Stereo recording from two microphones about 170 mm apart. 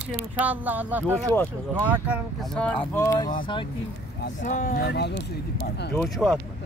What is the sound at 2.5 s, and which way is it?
Speech, 5° left (ahead or behind).